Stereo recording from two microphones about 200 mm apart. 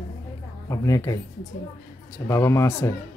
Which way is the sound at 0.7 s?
15° left (ahead or behind).